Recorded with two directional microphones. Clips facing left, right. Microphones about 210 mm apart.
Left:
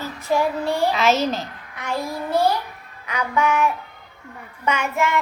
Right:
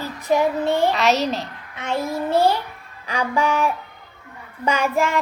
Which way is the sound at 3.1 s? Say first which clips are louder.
Even; 30° right (ahead or behind).